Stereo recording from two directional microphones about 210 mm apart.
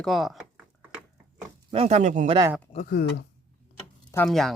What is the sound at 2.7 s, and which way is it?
Speech, 40° left (ahead or behind).